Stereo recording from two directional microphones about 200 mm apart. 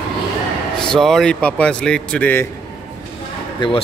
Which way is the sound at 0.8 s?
Centre (ahead or behind).